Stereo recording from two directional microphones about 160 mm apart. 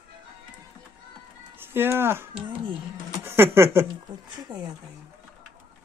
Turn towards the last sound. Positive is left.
turn(degrees=-25)  # may be behind; listen again after turning